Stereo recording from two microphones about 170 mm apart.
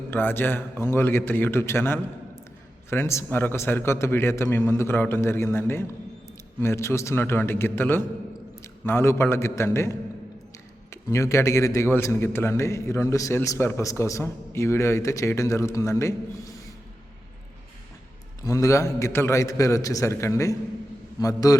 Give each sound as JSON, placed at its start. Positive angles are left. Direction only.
{"t": 0.1, "sound": "a man's voice", "side_deg": 10}
{"t": 11.1, "sound": "a man's voice", "side_deg": 15}
{"t": 18.4, "sound": "a man's voice", "side_deg": 20}